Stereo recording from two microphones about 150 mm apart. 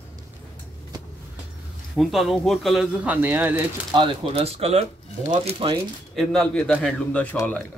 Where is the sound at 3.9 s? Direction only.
35° right (ahead or behind).